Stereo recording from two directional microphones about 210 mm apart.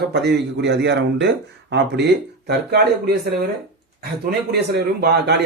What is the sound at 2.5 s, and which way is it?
Speech, 50° right (ahead or behind).